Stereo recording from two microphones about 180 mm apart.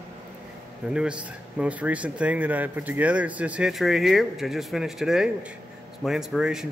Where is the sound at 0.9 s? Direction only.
5° right (ahead or behind).